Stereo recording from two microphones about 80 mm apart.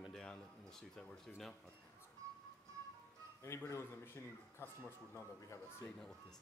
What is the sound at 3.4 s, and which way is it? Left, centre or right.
A man's voice, left.